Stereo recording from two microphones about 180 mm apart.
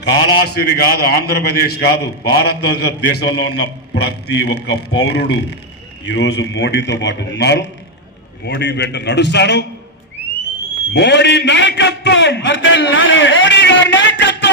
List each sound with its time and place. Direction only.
0.0 s a man's voice: 65° left (ahead or behind)
10.9 s a man's voice: 70° left (ahead or behind); by 14.5 s 85° left